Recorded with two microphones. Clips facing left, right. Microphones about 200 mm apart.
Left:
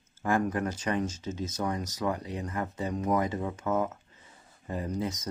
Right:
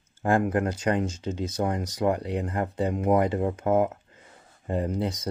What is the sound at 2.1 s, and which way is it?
Speech, 65° right (ahead or behind).